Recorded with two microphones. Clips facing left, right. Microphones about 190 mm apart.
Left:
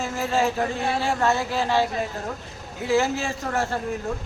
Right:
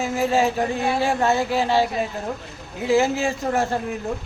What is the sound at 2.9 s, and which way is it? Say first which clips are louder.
Speech: right 3 dB; 15° right (ahead or behind).